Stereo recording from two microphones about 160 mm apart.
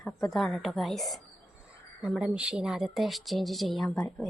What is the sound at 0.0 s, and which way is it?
Speech, centre (ahead or behind).